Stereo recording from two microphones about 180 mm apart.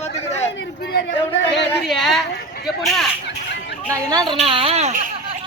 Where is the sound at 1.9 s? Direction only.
Centre (ahead or behind).